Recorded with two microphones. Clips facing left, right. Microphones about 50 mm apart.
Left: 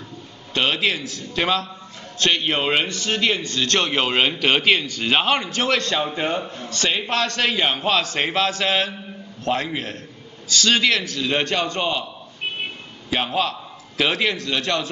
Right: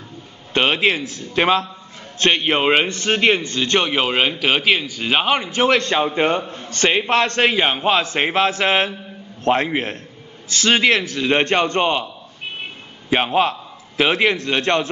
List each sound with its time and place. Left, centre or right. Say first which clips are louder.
0.6 s a man's voice: right 4 dB; right
13.1 s a man's voice: right 5 dB; right